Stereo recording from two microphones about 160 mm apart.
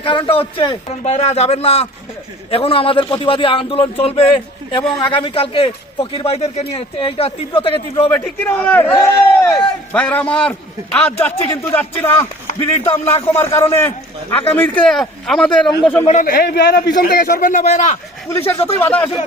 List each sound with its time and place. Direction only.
0.0 s a man's voice: 30° left (ahead or behind)
8.1 s a man's voice: 10° left (ahead or behind)
16.2 s a man's voice: 70° left (ahead or behind); by 17.9 s 45° left (ahead or behind)
18.3 s a man's voice: 15° left (ahead or behind)